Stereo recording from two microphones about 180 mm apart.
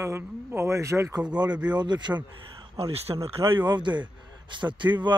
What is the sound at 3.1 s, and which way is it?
Speech, 30° right (ahead or behind).